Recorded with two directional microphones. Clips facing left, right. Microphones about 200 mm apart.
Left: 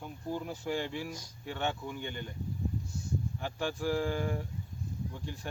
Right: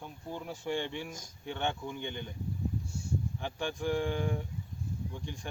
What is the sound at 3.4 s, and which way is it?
Speech, 5° left (ahead or behind).